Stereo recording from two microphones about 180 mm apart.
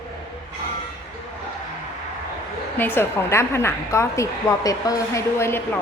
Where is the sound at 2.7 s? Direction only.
10° left (ahead or behind).